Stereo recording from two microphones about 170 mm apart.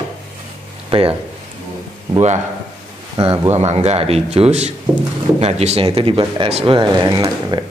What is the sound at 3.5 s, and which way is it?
Speech, 40° right (ahead or behind).